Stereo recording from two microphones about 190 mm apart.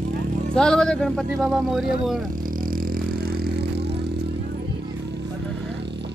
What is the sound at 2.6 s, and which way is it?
Vehicle, 50° right (ahead or behind).